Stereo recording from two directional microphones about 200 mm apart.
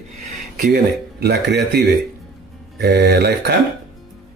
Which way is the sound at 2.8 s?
55° right (ahead or behind).